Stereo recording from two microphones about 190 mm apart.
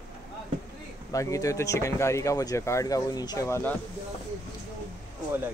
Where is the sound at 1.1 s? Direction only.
15° left (ahead or behind).